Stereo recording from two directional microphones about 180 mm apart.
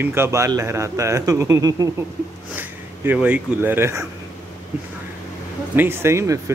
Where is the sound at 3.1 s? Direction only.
10° right (ahead or behind).